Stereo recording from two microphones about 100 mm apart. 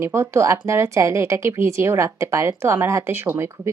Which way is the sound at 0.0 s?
25° right (ahead or behind).